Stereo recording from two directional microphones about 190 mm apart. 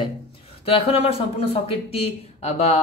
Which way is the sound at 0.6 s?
30° left (ahead or behind).